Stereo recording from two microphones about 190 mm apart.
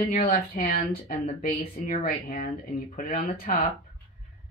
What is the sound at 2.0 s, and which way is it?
Speech, 45° left (ahead or behind).